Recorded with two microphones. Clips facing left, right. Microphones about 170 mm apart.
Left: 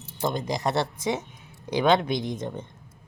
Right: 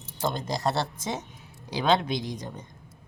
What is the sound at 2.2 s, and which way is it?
Speech, 25° left (ahead or behind).